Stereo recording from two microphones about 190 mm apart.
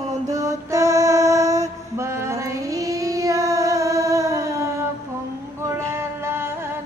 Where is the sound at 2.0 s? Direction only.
15° right (ahead or behind).